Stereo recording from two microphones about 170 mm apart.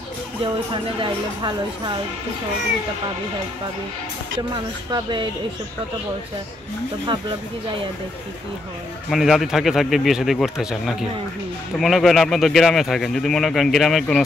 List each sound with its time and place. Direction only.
4.9 s speech: 30° right (ahead or behind)
9.1 s speech: centre (ahead or behind)